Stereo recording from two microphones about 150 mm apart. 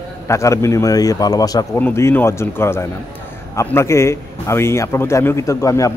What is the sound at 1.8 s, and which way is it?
A man's voice, 15° left (ahead or behind).